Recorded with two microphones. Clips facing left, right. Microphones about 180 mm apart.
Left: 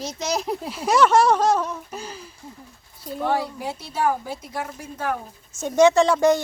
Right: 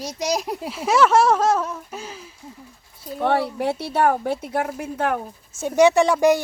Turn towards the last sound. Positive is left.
turn(degrees=-15)  # may be behind; listen again after turning